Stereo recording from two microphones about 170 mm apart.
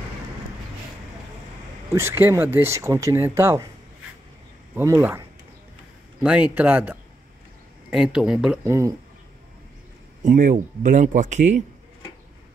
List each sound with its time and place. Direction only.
1.9 s speech: 15° right (ahead or behind)
4.7 s speech: 10° right (ahead or behind)
6.2 s speech: 10° right (ahead or behind)
8.6 s speech: 15° right (ahead or behind)
10.2 s speech: 50° right (ahead or behind)